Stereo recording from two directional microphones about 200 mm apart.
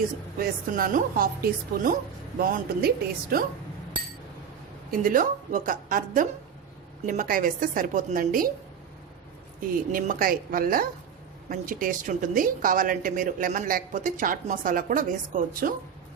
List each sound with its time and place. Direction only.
0.3 s a woman's voice: 45° right (ahead or behind)
4.9 s a woman's voice: 45° right (ahead or behind)
9.9 s a woman's voice: 45° right (ahead or behind)